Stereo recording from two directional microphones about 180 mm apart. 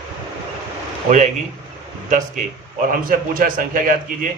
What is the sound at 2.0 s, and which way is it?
A man's voice, 45° right (ahead or behind).